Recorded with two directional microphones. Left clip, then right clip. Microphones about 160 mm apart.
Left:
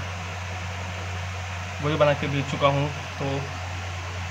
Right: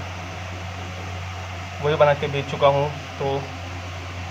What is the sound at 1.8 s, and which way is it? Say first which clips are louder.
Speech: right 4 dB; 20° right (ahead or behind).